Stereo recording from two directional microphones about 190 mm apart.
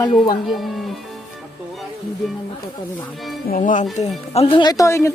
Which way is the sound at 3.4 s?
45° left (ahead or behind).